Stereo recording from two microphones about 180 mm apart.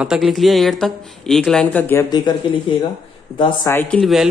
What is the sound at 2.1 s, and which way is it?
Speech, 25° left (ahead or behind).